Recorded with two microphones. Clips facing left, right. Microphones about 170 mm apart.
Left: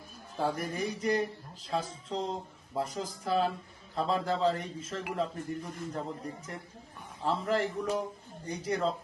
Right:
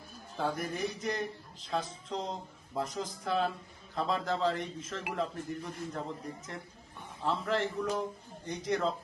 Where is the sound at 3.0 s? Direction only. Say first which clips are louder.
Left 2 dB; 5° left (ahead or behind).